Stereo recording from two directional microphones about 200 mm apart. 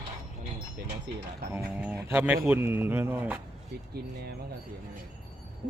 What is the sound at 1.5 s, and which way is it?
Speech, 10° right (ahead or behind).